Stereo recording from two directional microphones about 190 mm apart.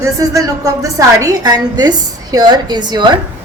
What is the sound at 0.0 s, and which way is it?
A woman's voice, 15° right (ahead or behind).